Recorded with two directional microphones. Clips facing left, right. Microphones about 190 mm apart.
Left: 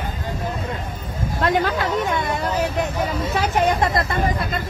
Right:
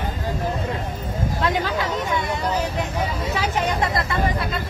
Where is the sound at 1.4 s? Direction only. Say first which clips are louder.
Left 4 dB; 55° left (ahead or behind).